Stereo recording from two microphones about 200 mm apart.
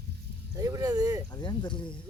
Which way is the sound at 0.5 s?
20° right (ahead or behind).